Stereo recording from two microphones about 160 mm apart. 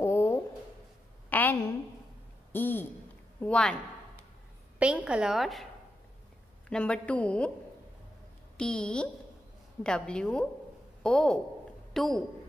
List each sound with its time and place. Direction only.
0.0 s a sound: 15° left (ahead or behind)
2.5 s a woman's voice: 10° left (ahead or behind)
4.7 s a woman's voice: 10° right (ahead or behind)
6.7 s a woman's voice: 5° left (ahead or behind)
8.5 s a woman's voice: 5° left (ahead or behind)